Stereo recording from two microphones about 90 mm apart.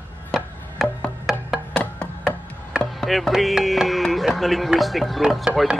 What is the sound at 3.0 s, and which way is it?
Music, centre (ahead or behind).